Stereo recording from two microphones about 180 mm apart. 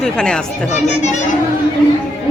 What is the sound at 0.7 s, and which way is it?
Speech, 40° left (ahead or behind).